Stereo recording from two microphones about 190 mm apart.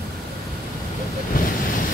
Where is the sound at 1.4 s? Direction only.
45° left (ahead or behind).